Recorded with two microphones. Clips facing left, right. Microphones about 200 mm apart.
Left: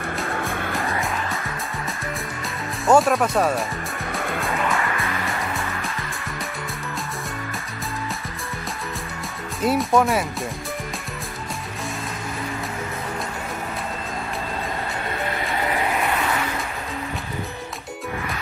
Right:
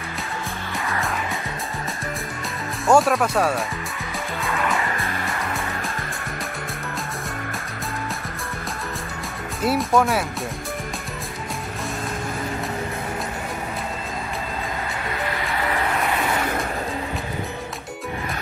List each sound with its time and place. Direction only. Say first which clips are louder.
0.5 s music: left 5 dB; 55° left (ahead or behind)
2.9 s speech: even; centre (ahead or behind)
4.4 s vehicle: right 1 dB; centre (ahead or behind)
9.6 s speech: left 1 dB; centre (ahead or behind)